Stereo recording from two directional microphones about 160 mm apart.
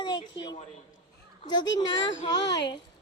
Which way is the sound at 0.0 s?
25° left (ahead or behind).